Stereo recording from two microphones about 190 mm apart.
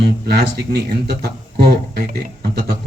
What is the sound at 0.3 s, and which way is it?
Speech, 60° right (ahead or behind).